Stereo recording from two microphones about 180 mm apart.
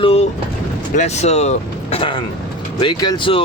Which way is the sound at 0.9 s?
40° left (ahead or behind).